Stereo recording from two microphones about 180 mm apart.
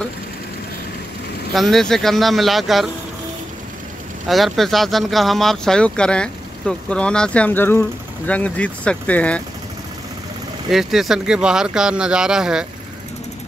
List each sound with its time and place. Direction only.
1.5 s speech: centre (ahead or behind)
4.3 s speech: centre (ahead or behind)
10.7 s speech: centre (ahead or behind)